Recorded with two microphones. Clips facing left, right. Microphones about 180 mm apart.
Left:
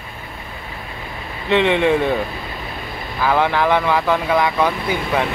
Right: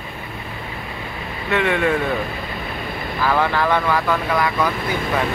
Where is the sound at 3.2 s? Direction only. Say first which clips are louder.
Left 2 dB; 15° left (ahead or behind).